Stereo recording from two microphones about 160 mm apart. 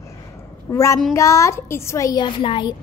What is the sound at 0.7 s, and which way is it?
Speech, 20° left (ahead or behind).